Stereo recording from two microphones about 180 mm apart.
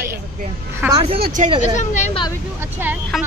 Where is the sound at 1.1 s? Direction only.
60° right (ahead or behind).